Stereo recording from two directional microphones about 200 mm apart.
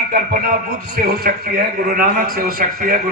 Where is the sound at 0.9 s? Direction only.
45° right (ahead or behind).